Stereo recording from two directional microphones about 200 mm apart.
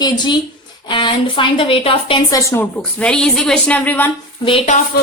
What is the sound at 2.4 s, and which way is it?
A woman's voice, 15° left (ahead or behind).